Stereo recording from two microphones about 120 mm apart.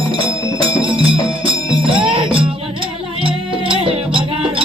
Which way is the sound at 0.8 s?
45° right (ahead or behind).